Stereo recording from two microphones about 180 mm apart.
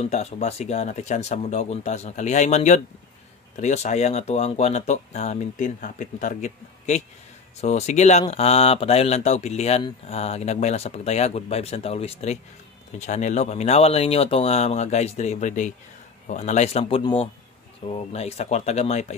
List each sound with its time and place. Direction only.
0.0 s speech: 35° left (ahead or behind)